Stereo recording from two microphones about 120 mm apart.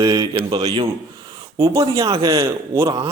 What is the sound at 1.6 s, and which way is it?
Speech, 25° right (ahead or behind).